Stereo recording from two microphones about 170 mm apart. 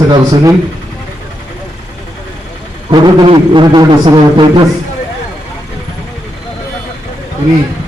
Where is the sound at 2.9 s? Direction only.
25° right (ahead or behind).